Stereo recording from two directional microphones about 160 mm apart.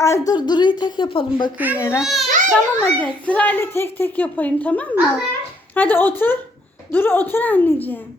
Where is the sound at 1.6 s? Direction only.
10° right (ahead or behind).